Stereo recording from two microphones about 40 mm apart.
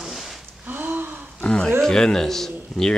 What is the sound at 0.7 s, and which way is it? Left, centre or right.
Gasp, right.